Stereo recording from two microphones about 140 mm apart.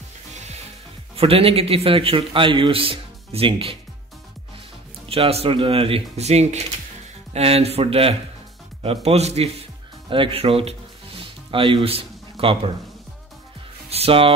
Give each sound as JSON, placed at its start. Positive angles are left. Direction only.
{"t": 0.3, "sound": "music", "side_deg": -55}
{"t": 1.1, "sound": "a man's voice", "side_deg": -45}
{"t": 5.1, "sound": "speech", "side_deg": -45}
{"t": 10.0, "sound": "music", "side_deg": -40}
{"t": 13.8, "sound": "speech", "side_deg": -45}